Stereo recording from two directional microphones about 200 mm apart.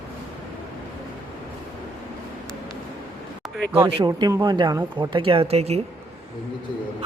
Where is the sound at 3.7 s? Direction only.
15° right (ahead or behind); by 5.8 s 30° right (ahead or behind).